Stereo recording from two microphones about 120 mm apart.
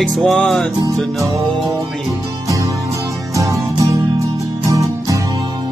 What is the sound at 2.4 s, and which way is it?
Music, 25° right (ahead or behind).